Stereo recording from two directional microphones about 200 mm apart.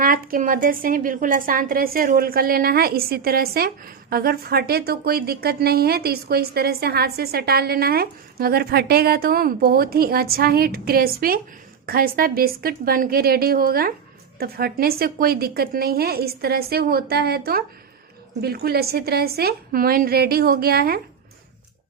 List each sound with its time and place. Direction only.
0.0 s a woman's voice: 45° right (ahead or behind)